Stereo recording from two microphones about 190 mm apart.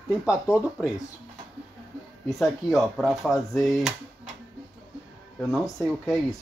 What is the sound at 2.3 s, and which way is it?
Speech, centre (ahead or behind).